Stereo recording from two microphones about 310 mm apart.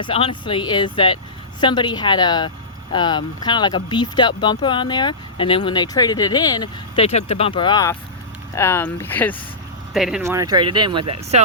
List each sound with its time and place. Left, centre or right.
0.0 s speech: centre; by 11.4 s right